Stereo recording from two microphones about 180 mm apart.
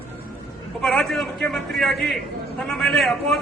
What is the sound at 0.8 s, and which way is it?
A man's voice, centre (ahead or behind).